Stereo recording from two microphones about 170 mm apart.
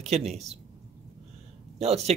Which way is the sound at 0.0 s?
40° right (ahead or behind).